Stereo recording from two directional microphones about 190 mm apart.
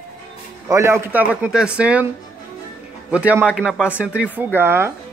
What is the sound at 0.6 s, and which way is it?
Speech, 15° right (ahead or behind).